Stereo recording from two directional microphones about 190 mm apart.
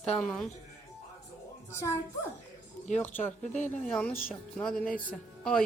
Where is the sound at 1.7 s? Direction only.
15° left (ahead or behind).